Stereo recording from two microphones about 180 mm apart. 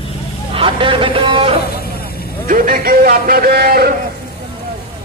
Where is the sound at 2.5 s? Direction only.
50° right (ahead or behind).